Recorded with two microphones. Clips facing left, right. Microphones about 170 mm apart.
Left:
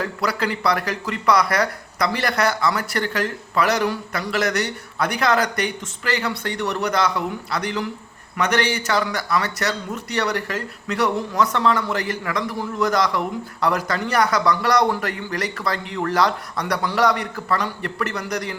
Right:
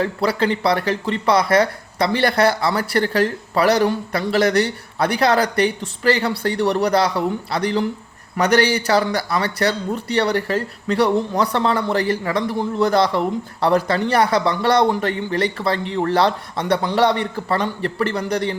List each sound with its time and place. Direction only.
0.0 s a man's voice: 30° right (ahead or behind)